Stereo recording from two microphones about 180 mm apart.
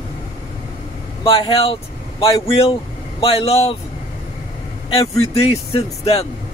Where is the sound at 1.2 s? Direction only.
30° left (ahead or behind).